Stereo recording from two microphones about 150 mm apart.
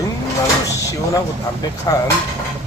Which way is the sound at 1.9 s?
20° left (ahead or behind).